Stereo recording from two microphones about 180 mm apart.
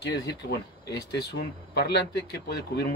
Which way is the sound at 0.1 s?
65° left (ahead or behind).